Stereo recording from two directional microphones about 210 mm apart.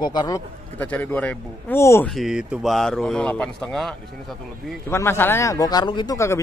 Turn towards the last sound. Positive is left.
turn(degrees=15)  # may be behind; listen again after turning